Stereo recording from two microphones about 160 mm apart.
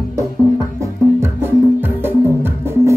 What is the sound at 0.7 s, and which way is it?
Music, 15° right (ahead or behind).